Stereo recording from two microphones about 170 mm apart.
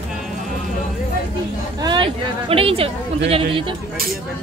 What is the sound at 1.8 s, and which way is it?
Speech, 30° right (ahead or behind).